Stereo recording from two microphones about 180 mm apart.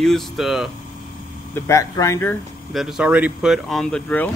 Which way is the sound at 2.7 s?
5° right (ahead or behind).